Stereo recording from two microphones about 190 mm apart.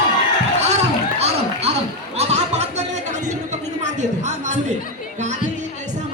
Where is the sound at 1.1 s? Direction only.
35° right (ahead or behind).